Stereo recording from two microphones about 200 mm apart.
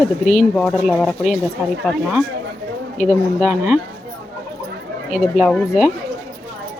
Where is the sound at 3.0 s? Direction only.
35° left (ahead or behind).